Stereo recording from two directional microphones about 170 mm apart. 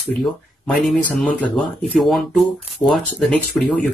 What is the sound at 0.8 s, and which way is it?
Speech, 5° left (ahead or behind).